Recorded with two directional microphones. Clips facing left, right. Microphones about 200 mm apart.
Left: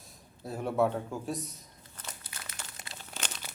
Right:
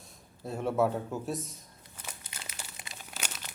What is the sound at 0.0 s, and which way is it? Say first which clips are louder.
Speech: right 2 dB; centre (ahead or behind).